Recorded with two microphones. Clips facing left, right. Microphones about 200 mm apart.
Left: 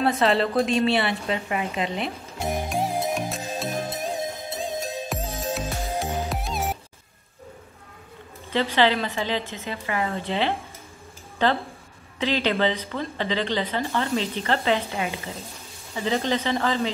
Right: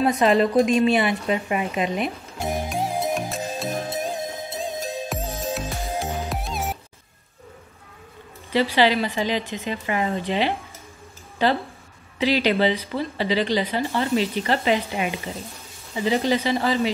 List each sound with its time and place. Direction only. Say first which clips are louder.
0.0 s speech: right 3 dB; 15° right (ahead or behind)
2.3 s music: left 2 dB; centre (ahead or behind)
8.7 s speech: even; 10° right (ahead or behind)